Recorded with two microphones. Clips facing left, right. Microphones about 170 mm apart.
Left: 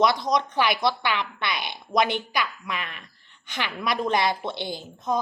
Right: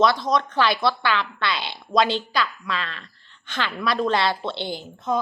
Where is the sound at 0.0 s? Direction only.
20° left (ahead or behind).